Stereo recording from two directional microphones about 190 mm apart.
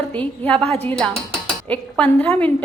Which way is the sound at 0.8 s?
5° left (ahead or behind).